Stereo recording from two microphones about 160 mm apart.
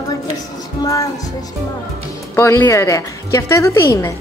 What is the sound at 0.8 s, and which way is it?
Music, 20° left (ahead or behind).